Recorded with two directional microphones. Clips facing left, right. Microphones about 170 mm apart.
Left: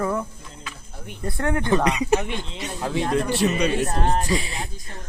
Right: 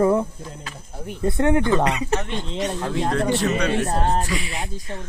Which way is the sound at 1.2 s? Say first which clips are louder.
Right 6 dB; 20° right (ahead or behind).